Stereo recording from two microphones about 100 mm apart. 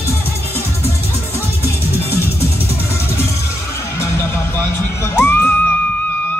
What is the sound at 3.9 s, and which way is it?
Music, 25° left (ahead or behind).